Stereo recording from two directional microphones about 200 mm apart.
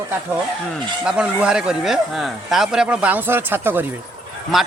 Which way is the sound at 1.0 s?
5° right (ahead or behind).